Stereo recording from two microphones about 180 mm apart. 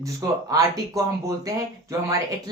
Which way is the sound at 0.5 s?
20° right (ahead or behind).